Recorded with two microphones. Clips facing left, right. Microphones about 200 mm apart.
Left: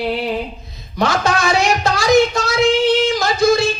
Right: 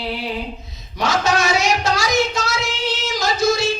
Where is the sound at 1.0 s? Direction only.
55° left (ahead or behind).